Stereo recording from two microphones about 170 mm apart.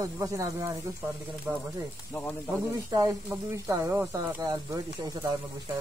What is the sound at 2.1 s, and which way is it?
Speech, 10° left (ahead or behind).